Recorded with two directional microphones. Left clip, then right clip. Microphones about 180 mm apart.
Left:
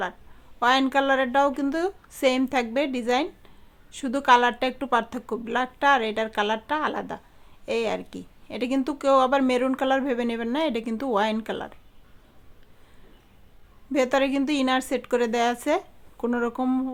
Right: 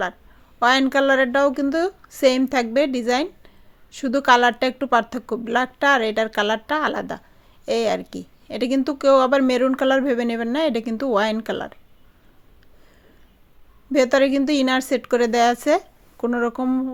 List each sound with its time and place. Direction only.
0.6 s a woman's voice: 20° right (ahead or behind)
13.9 s a woman's voice: 20° right (ahead or behind)